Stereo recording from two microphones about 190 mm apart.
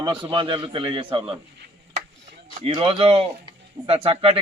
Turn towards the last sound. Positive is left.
turn(degrees=-30)  # may be behind; listen again after turning